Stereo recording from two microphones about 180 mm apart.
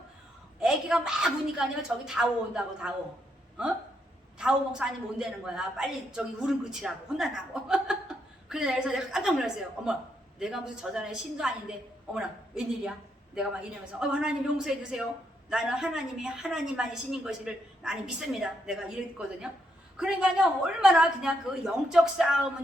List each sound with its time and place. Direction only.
0.6 s a woman's voice: 5° right (ahead or behind)
4.4 s a woman's voice: 5° right (ahead or behind)
20.0 s a woman's voice: 5° right (ahead or behind)